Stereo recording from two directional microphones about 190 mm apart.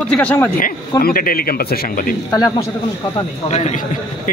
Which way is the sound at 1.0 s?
50° left (ahead or behind).